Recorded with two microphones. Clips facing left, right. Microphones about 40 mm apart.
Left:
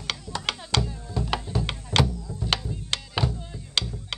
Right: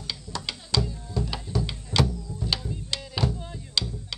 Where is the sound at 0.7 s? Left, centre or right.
Left.